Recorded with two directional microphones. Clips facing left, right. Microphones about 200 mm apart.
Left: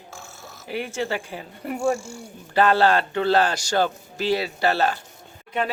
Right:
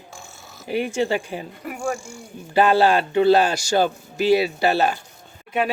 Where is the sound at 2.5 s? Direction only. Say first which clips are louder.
Right 2 dB; 10° right (ahead or behind).